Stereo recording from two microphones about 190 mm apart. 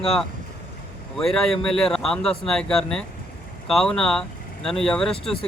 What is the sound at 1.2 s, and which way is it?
A man's voice, centre (ahead or behind).